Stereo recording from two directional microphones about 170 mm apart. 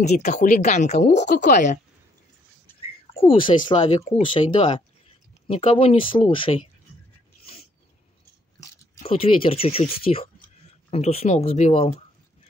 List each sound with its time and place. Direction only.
0.0 s speech: 45° left (ahead or behind)
3.4 s speech: 30° left (ahead or behind)
9.0 s speech: 35° left (ahead or behind)
10.9 s speech: 35° left (ahead or behind)